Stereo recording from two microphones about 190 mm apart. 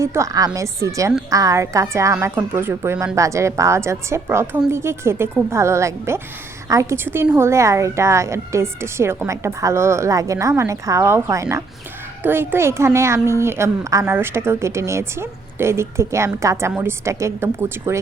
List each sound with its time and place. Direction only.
0.0 s a woman's voice: 15° right (ahead or behind)